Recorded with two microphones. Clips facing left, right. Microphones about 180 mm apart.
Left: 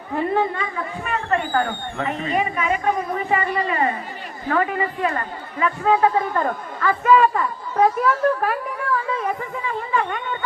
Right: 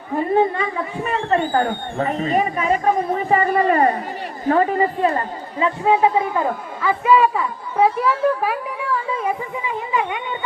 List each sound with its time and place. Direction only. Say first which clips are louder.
1.1 s a man's voice: right 3 dB; 25° right (ahead or behind)